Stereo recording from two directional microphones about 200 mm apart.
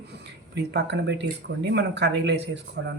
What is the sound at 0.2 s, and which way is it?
Speech, 60° right (ahead or behind).